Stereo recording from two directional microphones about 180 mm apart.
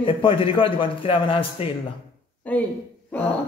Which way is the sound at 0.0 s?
30° left (ahead or behind).